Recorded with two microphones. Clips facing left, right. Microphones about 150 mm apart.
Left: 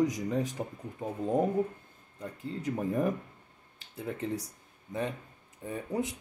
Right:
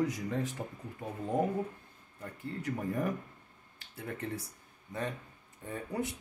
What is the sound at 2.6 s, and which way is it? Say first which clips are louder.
Speech: left 4 dB; 20° left (ahead or behind).